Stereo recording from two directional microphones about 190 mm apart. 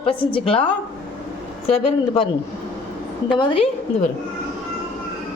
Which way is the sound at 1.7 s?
30° left (ahead or behind).